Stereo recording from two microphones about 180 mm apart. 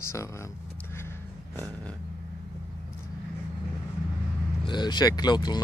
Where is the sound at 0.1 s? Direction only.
15° left (ahead or behind).